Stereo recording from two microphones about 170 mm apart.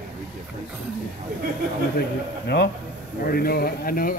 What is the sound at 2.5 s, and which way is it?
Speech, 80° left.